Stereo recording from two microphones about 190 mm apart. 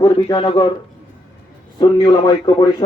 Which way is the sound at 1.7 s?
20° left (ahead or behind).